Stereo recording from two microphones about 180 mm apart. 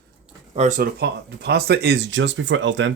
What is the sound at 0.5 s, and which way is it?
Speech, 40° right (ahead or behind).